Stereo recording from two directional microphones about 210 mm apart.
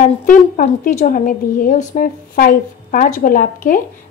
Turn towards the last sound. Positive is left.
turn(degrees=40)  # may be behind; listen again after turning